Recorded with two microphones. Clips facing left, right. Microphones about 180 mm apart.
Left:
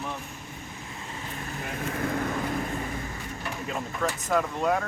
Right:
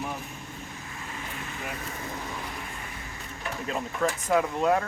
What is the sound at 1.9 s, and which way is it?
Speech, 65° left (ahead or behind).